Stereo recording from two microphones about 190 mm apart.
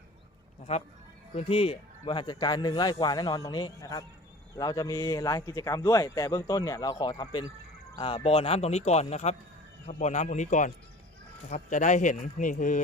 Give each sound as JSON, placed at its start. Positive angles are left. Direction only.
{"t": 0.7, "sound": "speech", "side_deg": 35}